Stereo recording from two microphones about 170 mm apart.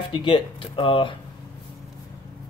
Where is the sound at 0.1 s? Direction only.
30° left (ahead or behind).